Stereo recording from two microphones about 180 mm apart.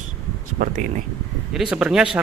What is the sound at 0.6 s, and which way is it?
Speech, 45° right (ahead or behind).